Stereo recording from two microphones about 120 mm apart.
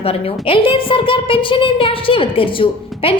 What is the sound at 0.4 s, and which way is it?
A woman's voice, 45° left (ahead or behind).